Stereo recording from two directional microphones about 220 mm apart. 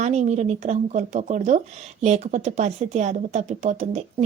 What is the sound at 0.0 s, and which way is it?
Speech, 30° right (ahead or behind).